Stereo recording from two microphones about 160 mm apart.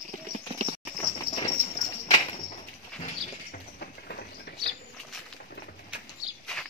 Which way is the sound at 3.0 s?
65° left (ahead or behind).